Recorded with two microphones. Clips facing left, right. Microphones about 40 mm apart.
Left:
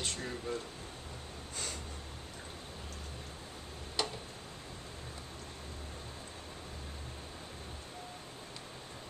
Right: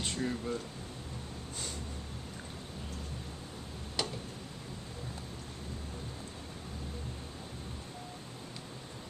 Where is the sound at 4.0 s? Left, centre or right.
Centre.